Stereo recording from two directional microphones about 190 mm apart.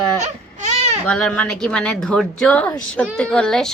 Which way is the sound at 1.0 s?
5° left (ahead or behind).